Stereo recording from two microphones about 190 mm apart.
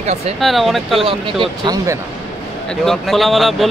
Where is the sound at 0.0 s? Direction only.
35° right (ahead or behind).